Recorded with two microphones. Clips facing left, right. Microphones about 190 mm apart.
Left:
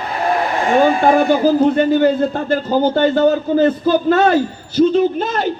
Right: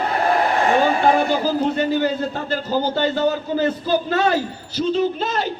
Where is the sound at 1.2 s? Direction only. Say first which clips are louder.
Left 7 dB; 55° left (ahead or behind).